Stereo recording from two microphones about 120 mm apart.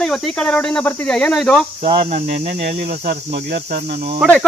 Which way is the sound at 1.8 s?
45° right (ahead or behind).